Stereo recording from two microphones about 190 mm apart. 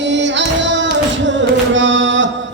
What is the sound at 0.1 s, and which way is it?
Music, 70° right (ahead or behind).